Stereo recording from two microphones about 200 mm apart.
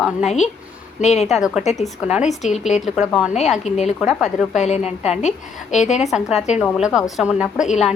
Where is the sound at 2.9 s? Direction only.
5° right (ahead or behind).